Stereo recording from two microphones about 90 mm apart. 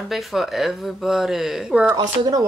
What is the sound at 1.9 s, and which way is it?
Speech, 45° right (ahead or behind).